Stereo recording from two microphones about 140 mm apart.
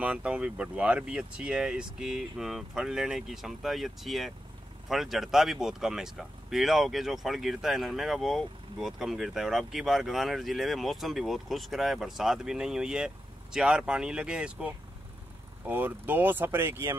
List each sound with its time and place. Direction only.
0.0 s speech: 10° right (ahead or behind)